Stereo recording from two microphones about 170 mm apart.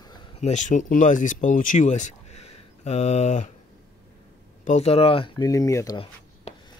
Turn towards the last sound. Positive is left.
turn(degrees=20)  # may be behind; listen again after turning